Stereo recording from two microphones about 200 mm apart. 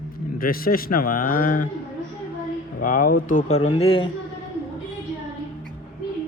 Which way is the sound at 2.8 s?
40° left (ahead or behind).